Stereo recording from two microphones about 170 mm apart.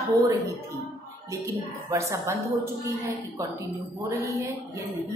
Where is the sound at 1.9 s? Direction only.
15° right (ahead or behind).